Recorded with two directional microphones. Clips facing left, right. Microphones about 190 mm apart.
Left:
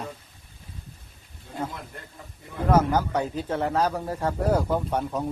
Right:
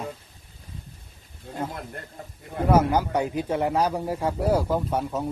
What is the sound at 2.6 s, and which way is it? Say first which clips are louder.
A man's voice: right 1 dB; 10° right (ahead or behind).